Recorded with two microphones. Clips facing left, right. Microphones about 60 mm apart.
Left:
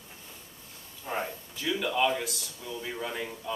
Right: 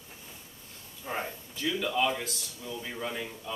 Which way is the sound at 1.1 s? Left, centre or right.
Centre.